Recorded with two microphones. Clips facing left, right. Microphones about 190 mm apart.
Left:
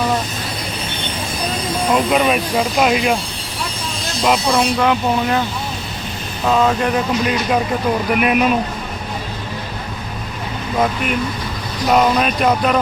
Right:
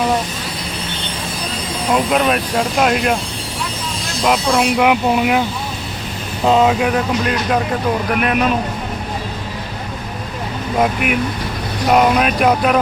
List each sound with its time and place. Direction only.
1.9 s speech: centre (ahead or behind)
4.2 s speech: centre (ahead or behind)
4.8 s speech: 15° right (ahead or behind)
6.4 s speech: 20° right (ahead or behind)
6.7 s speech: 5° right (ahead or behind)
10.8 s speech: 10° right (ahead or behind)